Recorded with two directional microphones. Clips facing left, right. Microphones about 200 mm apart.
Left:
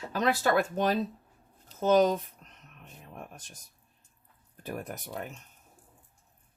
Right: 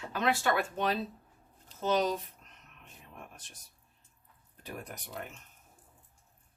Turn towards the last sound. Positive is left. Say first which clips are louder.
# left 5 dB
turn(degrees=45)  # may be behind; listen again after turning